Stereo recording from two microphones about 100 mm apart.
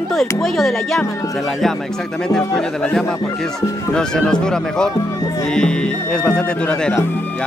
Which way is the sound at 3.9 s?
5° left (ahead or behind).